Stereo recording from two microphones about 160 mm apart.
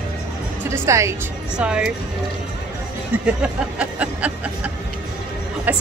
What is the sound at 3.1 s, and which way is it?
A woman's voice, 10° right (ahead or behind).